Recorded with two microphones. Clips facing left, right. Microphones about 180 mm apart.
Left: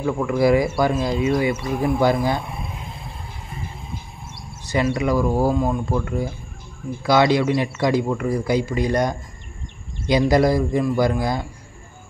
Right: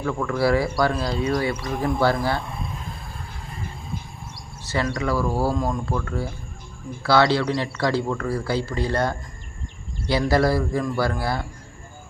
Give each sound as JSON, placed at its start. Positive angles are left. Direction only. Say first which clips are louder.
{"t": 0.0, "sound": "a man's voice", "louder": "left 4 dB", "side_deg": 15}
{"t": 4.6, "sound": "a man's voice", "louder": "left 4 dB", "side_deg": 15}